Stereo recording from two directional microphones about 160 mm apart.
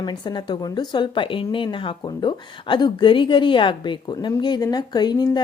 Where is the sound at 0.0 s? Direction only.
25° left (ahead or behind).